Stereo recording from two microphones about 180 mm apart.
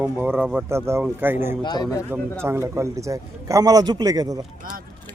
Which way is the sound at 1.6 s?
25° left (ahead or behind).